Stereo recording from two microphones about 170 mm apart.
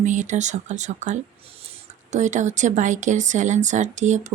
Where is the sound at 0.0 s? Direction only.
45° right (ahead or behind).